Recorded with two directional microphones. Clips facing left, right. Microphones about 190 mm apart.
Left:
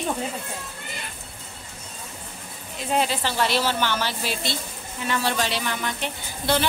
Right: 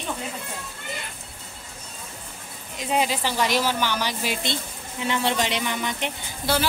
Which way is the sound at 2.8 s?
10° right (ahead or behind).